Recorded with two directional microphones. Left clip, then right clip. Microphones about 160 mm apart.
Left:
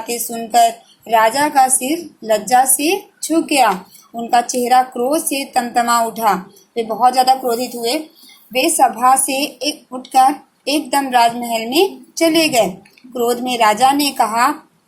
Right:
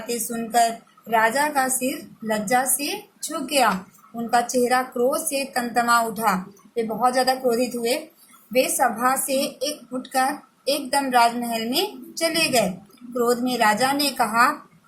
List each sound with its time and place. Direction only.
0.3 s a woman's voice: 35° left (ahead or behind)
4.3 s a woman's voice: 30° left (ahead or behind)